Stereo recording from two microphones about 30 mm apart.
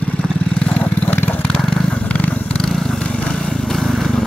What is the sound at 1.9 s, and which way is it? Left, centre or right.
Vehicle, left.